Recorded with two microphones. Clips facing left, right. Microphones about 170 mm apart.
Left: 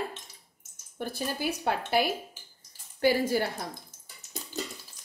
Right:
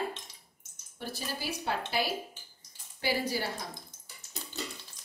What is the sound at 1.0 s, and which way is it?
A woman's voice, 55° left (ahead or behind).